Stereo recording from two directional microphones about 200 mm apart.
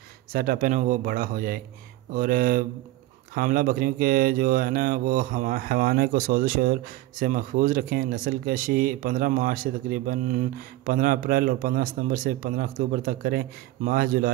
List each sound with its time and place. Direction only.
0.3 s speech: 50° right (ahead or behind)